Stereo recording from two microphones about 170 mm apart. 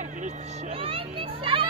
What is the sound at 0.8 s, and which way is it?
Children playing, 35° right (ahead or behind).